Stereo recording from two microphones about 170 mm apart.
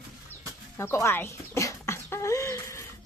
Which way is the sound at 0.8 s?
15° left (ahead or behind).